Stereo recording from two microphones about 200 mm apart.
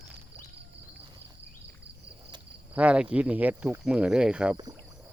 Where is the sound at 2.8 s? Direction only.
5° right (ahead or behind).